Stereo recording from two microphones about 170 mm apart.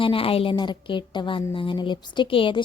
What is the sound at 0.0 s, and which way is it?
A woman's voice, 30° left (ahead or behind).